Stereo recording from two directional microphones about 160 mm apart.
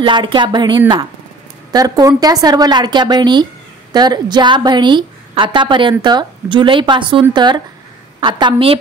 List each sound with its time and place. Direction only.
0.0 s a woman's voice: 30° right (ahead or behind)